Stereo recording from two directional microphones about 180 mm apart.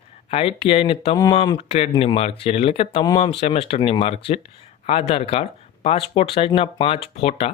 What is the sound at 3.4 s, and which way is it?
Speech, 35° left (ahead or behind).